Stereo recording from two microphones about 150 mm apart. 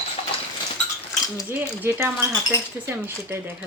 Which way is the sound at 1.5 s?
15° right (ahead or behind).